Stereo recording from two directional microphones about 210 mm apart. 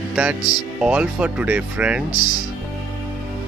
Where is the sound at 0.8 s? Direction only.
5° right (ahead or behind).